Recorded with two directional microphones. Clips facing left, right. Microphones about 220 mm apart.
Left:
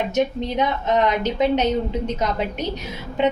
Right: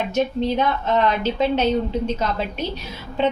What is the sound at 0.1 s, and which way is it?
Speech, 20° left (ahead or behind).